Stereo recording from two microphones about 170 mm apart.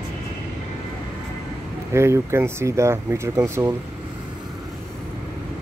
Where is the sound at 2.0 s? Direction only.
15° right (ahead or behind).